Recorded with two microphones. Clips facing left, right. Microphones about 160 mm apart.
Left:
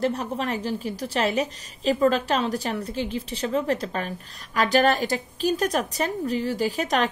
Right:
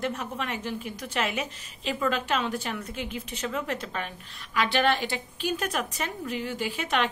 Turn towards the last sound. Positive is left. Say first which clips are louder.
# left 5 dB
turn(degrees=40)  # may be behind; listen again after turning